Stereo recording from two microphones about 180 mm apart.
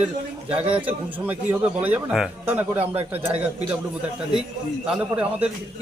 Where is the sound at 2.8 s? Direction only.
35° right (ahead or behind).